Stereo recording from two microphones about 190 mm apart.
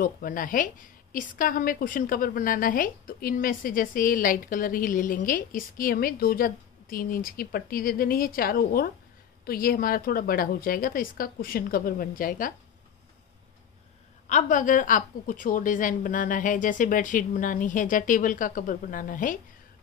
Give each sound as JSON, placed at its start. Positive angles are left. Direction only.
{"t": 0.0, "sound": "a woman's voice", "side_deg": 45}
{"t": 14.3, "sound": "a woman's voice", "side_deg": 45}